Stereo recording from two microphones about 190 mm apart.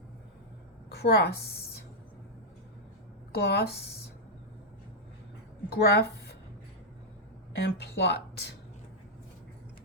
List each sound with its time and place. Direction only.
0.9 s speech: 60° left (ahead or behind)
3.3 s speech: 60° left (ahead or behind)
5.7 s a woman's voice: 60° left (ahead or behind)
7.5 s speech: 60° left (ahead or behind)